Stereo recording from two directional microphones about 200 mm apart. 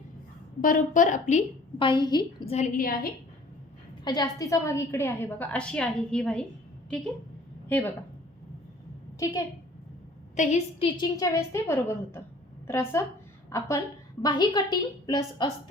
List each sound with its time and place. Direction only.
0.6 s a woman's voice: 45° left (ahead or behind)
1.8 s a woman's voice: 20° left (ahead or behind)
2.5 s a woman's voice: 35° left (ahead or behind)
4.0 s a woman's voice: 20° left (ahead or behind); by 6.4 s 5° left (ahead or behind)
7.7 s a woman's voice: 10° left (ahead or behind)
9.1 s a woman's voice: 15° left (ahead or behind)
10.3 s a woman's voice: 30° left (ahead or behind)